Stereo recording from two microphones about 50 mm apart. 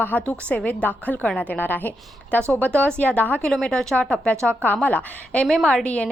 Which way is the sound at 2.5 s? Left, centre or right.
Left.